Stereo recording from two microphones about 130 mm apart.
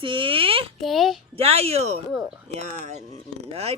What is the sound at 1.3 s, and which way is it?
Speech, 50° right (ahead or behind).